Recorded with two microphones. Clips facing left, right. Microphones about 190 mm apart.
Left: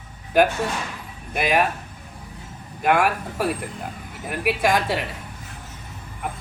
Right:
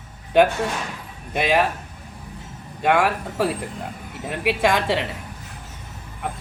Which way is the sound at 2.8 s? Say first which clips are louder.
Right 1 dB; 25° right (ahead or behind).